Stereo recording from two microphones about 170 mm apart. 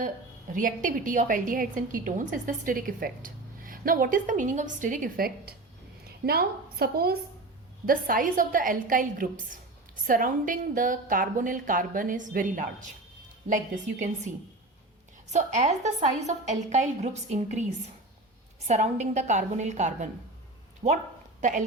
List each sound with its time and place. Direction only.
0.5 s a woman's voice: 50° right (ahead or behind)
15.3 s a woman's voice: 45° right (ahead or behind)
18.7 s a woman's voice: 40° right (ahead or behind)